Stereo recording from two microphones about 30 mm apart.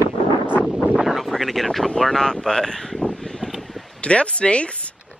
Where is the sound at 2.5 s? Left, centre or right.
Left.